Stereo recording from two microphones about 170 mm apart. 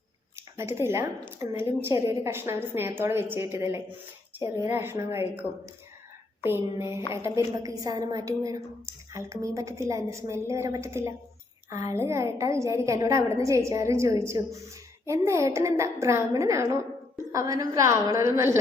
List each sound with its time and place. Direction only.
0.3 s a woman's voice: 15° right (ahead or behind)